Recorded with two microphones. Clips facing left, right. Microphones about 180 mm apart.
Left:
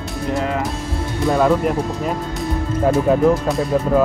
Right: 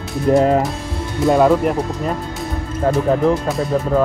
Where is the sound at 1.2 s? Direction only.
Centre (ahead or behind).